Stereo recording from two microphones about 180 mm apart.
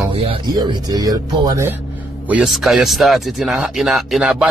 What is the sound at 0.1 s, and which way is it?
Speech, 30° right (ahead or behind).